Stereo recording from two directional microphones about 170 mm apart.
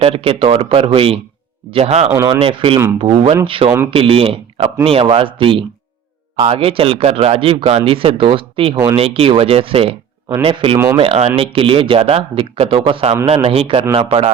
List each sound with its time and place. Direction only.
0.0 s speech: 35° right (ahead or behind)
2.2 s speech: 30° right (ahead or behind)